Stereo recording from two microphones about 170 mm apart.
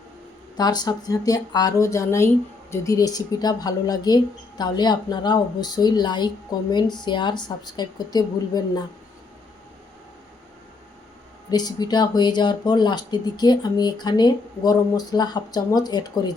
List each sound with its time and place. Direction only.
0.5 s speech: 25° left (ahead or behind)
11.5 s speech: 25° left (ahead or behind)